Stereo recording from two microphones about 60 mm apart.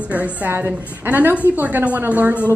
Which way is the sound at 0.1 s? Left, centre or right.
Right.